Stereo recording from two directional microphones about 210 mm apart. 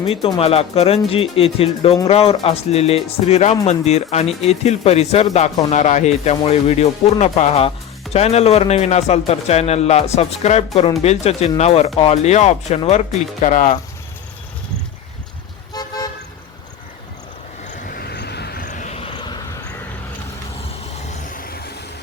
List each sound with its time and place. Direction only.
0.0 s a man's voice: 25° left (ahead or behind)
15.7 s toot: 20° left (ahead or behind)
17.7 s vehicle: 45° left (ahead or behind)
21.1 s vehicle: 40° left (ahead or behind)